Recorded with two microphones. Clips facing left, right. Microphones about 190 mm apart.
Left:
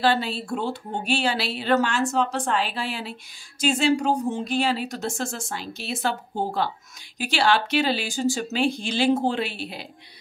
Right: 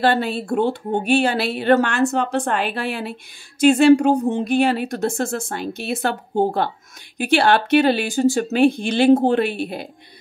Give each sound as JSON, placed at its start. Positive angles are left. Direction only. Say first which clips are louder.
{"t": 0.0, "sound": "speech", "louder": "right 4 dB", "side_deg": -55}